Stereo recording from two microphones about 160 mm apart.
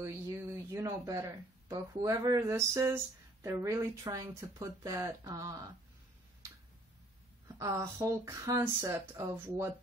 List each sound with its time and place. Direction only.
0.0 s speech: 15° right (ahead or behind)
7.4 s speech: 20° right (ahead or behind)